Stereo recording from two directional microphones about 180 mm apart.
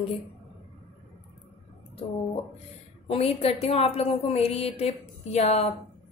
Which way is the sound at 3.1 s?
35° left (ahead or behind).